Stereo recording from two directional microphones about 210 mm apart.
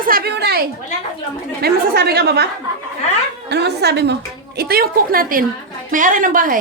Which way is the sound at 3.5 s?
50° right (ahead or behind).